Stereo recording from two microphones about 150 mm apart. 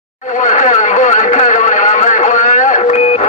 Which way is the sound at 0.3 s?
55° left (ahead or behind).